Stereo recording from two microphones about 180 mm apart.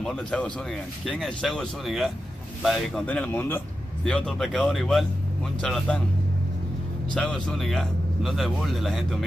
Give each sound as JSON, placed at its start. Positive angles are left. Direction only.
{"t": 0.0, "sound": "a man's voice", "side_deg": 5}
{"t": 7.2, "sound": "a man's voice", "side_deg": 5}